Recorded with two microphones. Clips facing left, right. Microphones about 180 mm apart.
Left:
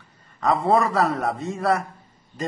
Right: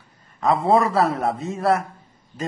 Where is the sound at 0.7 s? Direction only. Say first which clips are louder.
Right 2 dB; centre (ahead or behind).